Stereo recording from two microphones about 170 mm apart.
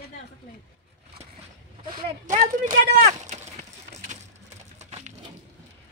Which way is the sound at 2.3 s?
50° right (ahead or behind).